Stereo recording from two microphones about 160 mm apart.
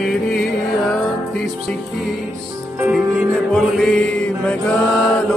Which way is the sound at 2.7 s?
10° right (ahead or behind).